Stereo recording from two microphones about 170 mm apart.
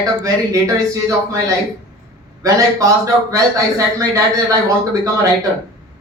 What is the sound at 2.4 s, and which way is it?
Speech, 20° right (ahead or behind).